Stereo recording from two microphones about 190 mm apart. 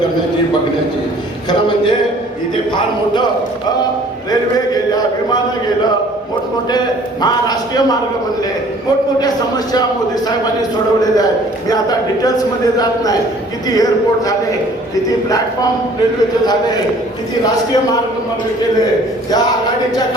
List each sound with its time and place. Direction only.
1.5 s a man's voice: 25° left (ahead or behind)
6.7 s a man's voice: 20° left (ahead or behind)
10.2 s a man's voice: 20° left (ahead or behind)
16.5 s a man's voice: 20° left (ahead or behind)